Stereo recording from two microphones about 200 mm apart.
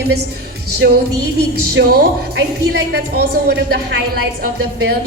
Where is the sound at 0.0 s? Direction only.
55° right (ahead or behind).